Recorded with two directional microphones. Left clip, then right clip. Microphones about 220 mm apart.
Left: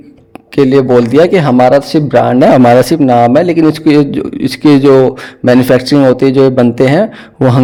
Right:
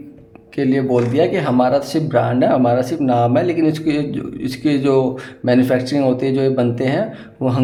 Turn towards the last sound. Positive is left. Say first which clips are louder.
# left 10 dB
turn(degrees=45)  # may be behind; listen again after turning